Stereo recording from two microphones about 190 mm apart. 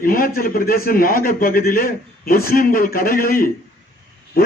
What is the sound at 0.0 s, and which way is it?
A man's voice, 50° left (ahead or behind).